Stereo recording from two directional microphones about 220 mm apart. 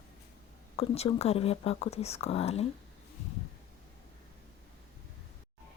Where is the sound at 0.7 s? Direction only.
25° left (ahead or behind).